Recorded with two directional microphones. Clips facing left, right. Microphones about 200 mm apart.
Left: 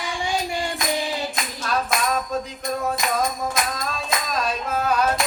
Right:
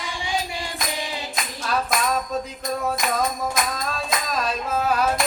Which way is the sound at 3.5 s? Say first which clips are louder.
Even; centre (ahead or behind).